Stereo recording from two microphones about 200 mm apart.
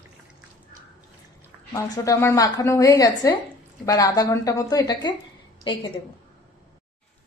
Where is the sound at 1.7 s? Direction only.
15° left (ahead or behind).